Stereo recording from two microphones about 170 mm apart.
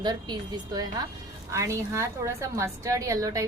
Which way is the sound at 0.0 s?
25° right (ahead or behind).